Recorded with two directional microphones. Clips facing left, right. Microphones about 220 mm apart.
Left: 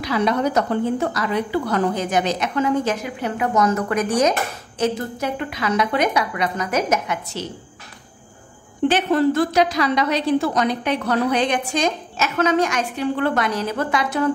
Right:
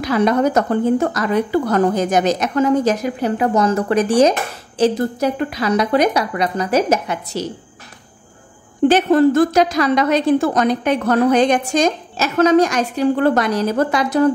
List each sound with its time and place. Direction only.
0.0 s a woman's voice: 45° right (ahead or behind)
8.8 s a woman's voice: 45° right (ahead or behind)